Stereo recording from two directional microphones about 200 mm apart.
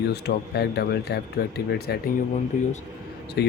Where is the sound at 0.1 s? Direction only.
55° left (ahead or behind).